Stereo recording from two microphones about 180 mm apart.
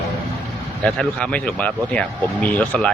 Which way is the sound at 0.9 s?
5° left (ahead or behind).